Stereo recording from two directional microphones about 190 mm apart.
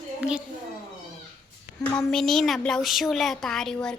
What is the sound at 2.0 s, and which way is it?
Speech, centre (ahead or behind).